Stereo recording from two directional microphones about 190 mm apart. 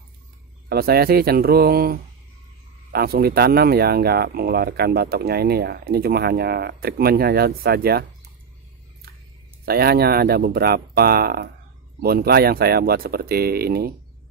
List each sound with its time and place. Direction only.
0.7 s speech: 55° right (ahead or behind)
9.7 s speech: 55° right (ahead or behind)